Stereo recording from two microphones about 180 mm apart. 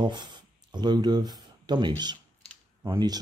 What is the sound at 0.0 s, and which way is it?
Speech, 25° right (ahead or behind).